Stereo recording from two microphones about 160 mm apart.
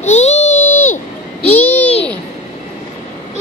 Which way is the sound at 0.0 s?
45° left (ahead or behind).